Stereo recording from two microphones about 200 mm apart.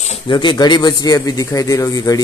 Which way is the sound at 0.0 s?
30° left (ahead or behind).